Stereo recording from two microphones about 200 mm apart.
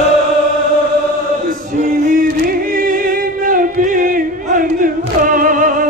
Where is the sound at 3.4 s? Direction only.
45° right (ahead or behind).